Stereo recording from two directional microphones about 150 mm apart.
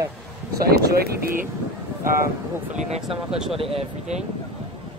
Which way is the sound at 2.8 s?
45° right (ahead or behind).